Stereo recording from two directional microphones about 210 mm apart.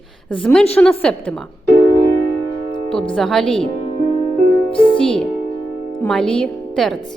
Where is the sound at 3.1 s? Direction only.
Centre (ahead or behind).